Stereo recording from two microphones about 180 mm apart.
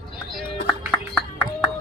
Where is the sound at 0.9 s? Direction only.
5° left (ahead or behind).